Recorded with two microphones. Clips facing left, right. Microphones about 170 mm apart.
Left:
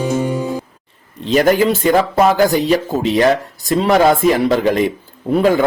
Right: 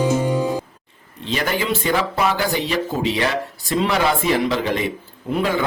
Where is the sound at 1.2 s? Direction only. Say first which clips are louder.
Left 10 dB; 45° left (ahead or behind).